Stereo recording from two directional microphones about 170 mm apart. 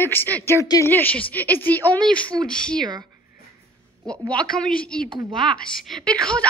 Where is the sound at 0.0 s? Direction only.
10° left (ahead or behind).